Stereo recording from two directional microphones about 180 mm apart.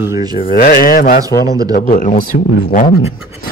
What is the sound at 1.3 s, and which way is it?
Speech, 20° left (ahead or behind).